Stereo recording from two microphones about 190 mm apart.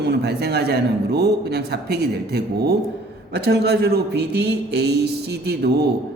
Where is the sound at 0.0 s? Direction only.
60° right (ahead or behind).